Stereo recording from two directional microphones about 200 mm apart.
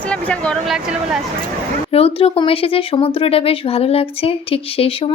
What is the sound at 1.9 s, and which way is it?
Speech, 30° left (ahead or behind).